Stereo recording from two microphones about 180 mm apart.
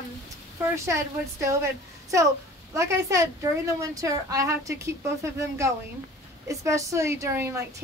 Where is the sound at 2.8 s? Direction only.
15° right (ahead or behind).